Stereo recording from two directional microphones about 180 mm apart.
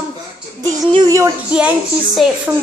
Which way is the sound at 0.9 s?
20° right (ahead or behind).